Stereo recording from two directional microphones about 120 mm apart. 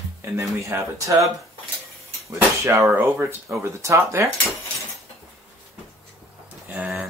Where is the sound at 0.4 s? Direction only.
25° right (ahead or behind).